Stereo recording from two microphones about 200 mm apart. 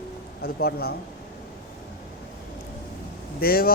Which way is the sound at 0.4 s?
50° left (ahead or behind).